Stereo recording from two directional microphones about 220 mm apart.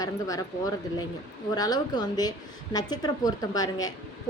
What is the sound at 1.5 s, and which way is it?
A woman's voice, 15° left (ahead or behind).